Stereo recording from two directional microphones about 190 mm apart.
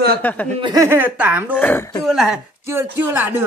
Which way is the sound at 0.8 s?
10° right (ahead or behind).